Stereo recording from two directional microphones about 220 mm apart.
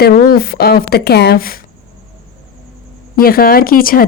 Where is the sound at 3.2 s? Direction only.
40° left (ahead or behind).